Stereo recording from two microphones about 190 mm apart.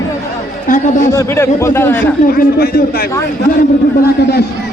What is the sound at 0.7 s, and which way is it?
Speech, 40° left (ahead or behind).